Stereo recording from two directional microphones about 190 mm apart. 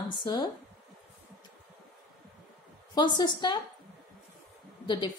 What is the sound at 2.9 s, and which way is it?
Speech, 20° left (ahead or behind).